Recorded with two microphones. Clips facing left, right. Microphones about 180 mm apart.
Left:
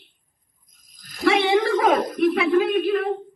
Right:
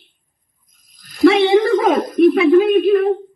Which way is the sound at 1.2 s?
25° right (ahead or behind).